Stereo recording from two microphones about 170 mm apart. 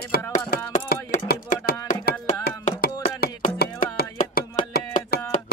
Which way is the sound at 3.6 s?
65° left (ahead or behind).